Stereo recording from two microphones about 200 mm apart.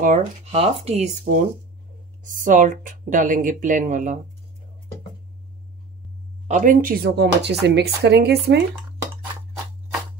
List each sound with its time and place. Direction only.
0.0 s speech: 35° right (ahead or behind)
6.4 s speech: 40° right (ahead or behind)